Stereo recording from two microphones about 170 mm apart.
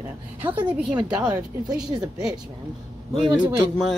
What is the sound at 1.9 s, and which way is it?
Speech, 25° right (ahead or behind).